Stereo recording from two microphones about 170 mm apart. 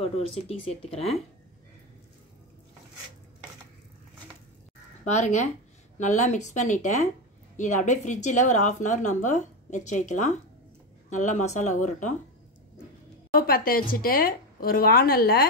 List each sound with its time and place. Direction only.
0.0 s speech: 35° left (ahead or behind)
5.0 s a woman's voice: 45° left (ahead or behind)
13.3 s speech: 60° left (ahead or behind)